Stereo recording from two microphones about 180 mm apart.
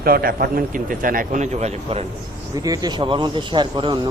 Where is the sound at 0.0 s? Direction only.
55° right (ahead or behind); by 2.0 s 35° right (ahead or behind).